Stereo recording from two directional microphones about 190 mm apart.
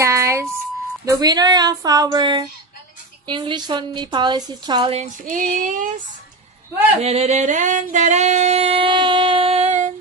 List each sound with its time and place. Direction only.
0.0 s a sound: 15° right (ahead or behind)
1.0 s a woman's voice: 20° right (ahead or behind)
5.2 s speech: 45° right (ahead or behind)
7.0 s singing: 35° right (ahead or behind)